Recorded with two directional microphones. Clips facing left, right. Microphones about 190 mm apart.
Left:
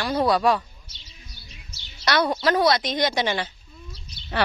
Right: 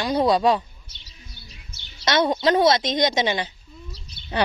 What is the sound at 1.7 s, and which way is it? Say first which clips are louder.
Chirp: even; 55° right (ahead or behind).